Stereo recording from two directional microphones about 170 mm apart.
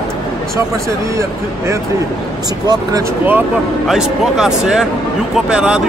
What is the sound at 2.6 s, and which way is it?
Speech, 20° right (ahead or behind).